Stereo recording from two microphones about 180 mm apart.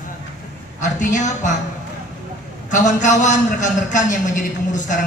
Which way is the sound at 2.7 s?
45° left (ahead or behind).